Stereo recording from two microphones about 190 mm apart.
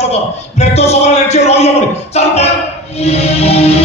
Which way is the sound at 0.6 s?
35° left (ahead or behind).